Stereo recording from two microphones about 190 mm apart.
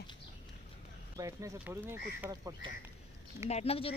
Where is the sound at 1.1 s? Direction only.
15° right (ahead or behind).